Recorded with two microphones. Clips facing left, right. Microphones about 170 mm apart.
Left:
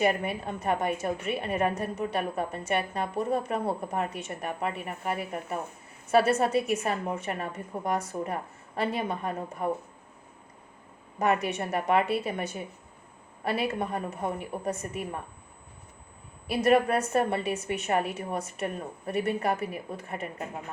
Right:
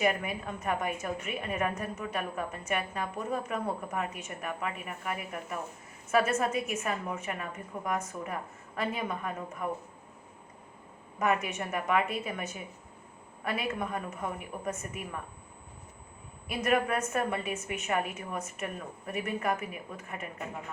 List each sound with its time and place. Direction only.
0.0 s a woman's voice: 30° left (ahead or behind)
11.2 s a woman's voice: 35° left (ahead or behind)
16.6 s a woman's voice: 35° left (ahead or behind)